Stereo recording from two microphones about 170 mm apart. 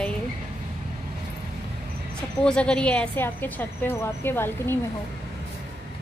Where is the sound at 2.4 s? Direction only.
5° left (ahead or behind).